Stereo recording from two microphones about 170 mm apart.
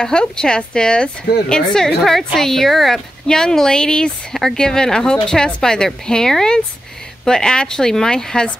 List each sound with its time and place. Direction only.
0.0 s a woman's voice: 5° left (ahead or behind)